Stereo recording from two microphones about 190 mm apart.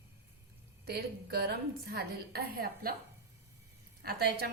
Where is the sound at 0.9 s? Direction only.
55° right (ahead or behind).